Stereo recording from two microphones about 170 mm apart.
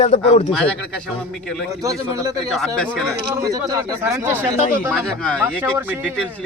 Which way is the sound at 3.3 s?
20° right (ahead or behind).